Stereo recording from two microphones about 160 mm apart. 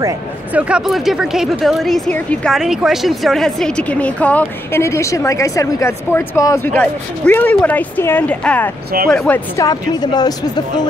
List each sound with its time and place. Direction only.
0.5 s a woman's voice: 10° right (ahead or behind)
9.6 s speech: 25° left (ahead or behind)